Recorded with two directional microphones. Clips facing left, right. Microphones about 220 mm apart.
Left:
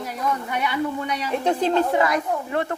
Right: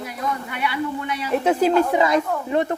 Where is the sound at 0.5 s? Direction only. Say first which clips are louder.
Left 1 dB; 40° left (ahead or behind).